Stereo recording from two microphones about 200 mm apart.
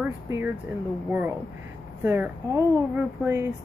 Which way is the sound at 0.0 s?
10° right (ahead or behind).